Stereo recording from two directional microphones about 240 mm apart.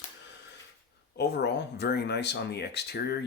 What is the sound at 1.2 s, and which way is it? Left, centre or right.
Speech, left.